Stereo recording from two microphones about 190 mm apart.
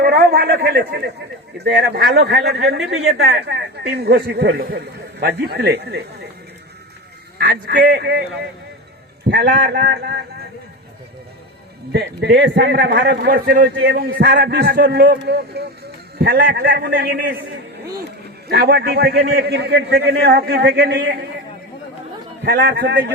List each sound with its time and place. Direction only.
0.0 s a man's voice: 55° right (ahead or behind)
7.3 s a man's voice: 65° right (ahead or behind)
9.2 s a man's voice: 60° right (ahead or behind)
11.9 s a man's voice: 60° right (ahead or behind)
18.4 s a man's voice: 60° right (ahead or behind)
22.4 s a man's voice: 60° right (ahead or behind)